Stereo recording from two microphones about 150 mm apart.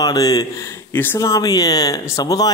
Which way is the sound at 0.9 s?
15° left (ahead or behind).